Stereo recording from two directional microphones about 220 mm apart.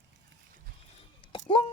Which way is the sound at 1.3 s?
20° left (ahead or behind).